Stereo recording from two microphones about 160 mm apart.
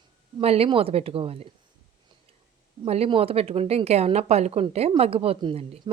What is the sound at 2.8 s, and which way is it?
A woman's voice, 40° right (ahead or behind).